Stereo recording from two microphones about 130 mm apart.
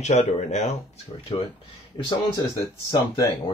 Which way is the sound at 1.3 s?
45° left (ahead or behind).